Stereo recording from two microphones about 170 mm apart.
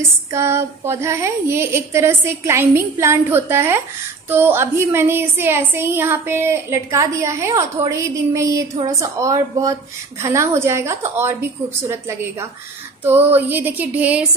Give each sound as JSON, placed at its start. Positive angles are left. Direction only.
{"t": 0.3, "sound": "a woman's voice", "side_deg": -15}